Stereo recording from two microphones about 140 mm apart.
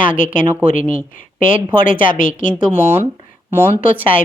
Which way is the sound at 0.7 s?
75° left (ahead or behind).